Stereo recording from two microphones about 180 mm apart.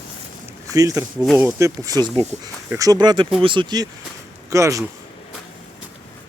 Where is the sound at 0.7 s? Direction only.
20° right (ahead or behind).